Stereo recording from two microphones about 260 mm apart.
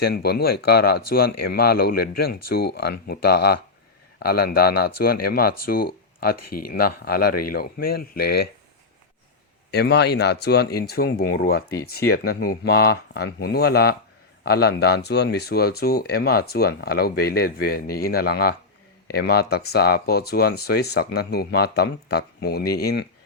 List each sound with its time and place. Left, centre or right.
0.0 s speech: left
9.7 s speech: left